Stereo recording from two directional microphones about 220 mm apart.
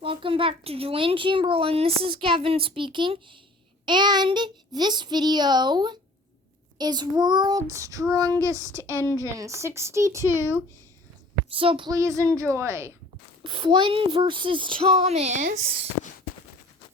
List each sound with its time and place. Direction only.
0.0 s speech: 25° right (ahead or behind)
11.5 s speech: 25° right (ahead or behind)